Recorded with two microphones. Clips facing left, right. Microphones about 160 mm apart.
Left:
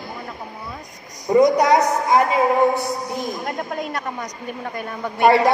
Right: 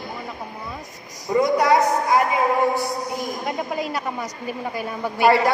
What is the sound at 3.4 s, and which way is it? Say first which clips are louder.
Speech: right 1 dB; 5° right (ahead or behind).